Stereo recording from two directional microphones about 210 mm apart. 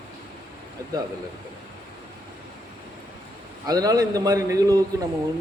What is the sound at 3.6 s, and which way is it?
A man's voice, 15° right (ahead or behind).